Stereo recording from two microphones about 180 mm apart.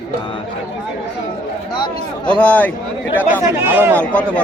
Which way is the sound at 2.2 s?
5° left (ahead or behind).